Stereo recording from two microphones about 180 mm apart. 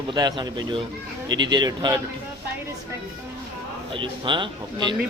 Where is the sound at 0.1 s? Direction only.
25° right (ahead or behind).